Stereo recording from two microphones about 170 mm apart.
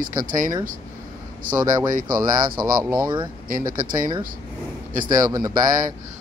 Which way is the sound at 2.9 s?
25° right (ahead or behind).